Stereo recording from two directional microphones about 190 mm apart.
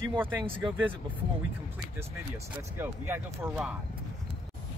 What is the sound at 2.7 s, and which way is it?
Speech, 10° right (ahead or behind).